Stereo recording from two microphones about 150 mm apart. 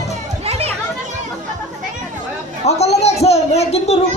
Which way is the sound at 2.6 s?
45° left (ahead or behind).